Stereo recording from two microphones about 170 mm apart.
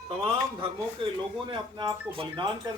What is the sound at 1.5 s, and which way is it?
A man's voice, 25° right (ahead or behind).